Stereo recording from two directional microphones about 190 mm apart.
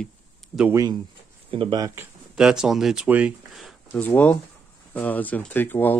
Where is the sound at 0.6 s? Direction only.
15° right (ahead or behind).